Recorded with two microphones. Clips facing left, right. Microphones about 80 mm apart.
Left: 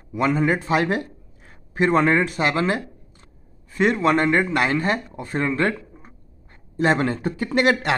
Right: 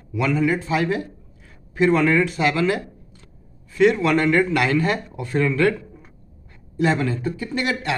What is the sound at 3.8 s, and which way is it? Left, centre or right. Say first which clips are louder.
A man's voice: right 2 dB; left.